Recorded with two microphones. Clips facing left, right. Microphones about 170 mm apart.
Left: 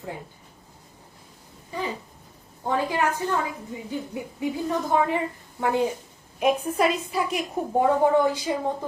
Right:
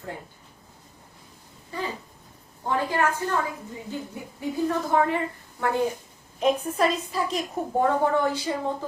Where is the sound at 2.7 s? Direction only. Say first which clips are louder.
Even; 15° left (ahead or behind).